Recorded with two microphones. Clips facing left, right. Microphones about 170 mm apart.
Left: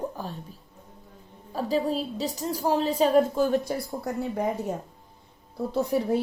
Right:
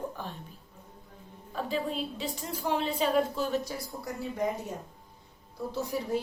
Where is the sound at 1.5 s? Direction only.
40° left (ahead or behind); by 4.4 s 55° left (ahead or behind).